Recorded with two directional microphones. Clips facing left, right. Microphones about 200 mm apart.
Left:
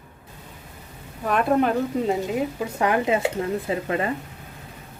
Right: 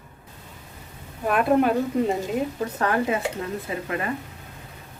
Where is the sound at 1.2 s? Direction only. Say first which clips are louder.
Right 1 dB; 5° right (ahead or behind); by 3.8 s 25° left (ahead or behind).